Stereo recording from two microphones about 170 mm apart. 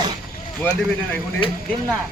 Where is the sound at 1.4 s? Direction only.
30° left (ahead or behind).